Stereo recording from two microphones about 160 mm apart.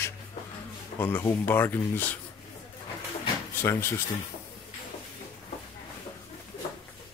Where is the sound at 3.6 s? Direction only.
15° left (ahead or behind).